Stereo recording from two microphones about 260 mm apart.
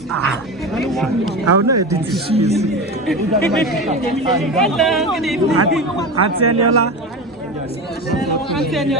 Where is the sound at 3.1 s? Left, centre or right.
Centre.